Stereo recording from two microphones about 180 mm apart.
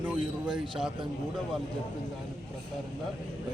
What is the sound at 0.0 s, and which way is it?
Speech, 5° right (ahead or behind).